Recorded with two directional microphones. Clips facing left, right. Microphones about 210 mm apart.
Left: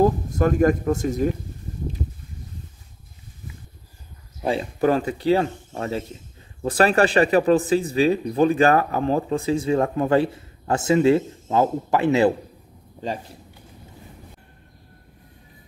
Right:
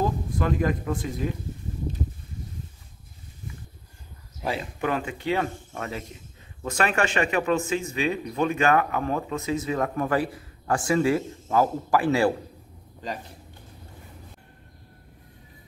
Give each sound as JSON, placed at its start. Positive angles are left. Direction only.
{"t": 0.0, "sound": "speech", "side_deg": 45}
{"t": 4.5, "sound": "speech", "side_deg": 35}